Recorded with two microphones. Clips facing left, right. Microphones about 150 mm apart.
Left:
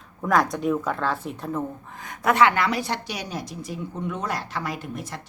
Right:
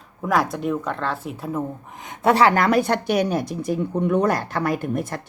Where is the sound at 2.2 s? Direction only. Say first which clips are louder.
Right 3 dB; 35° right (ahead or behind); by 5.2 s 50° right (ahead or behind).